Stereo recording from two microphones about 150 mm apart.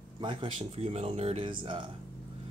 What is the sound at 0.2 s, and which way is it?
Speech, 35° right (ahead or behind).